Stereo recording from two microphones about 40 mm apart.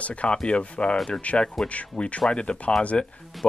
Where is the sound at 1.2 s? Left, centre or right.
Left.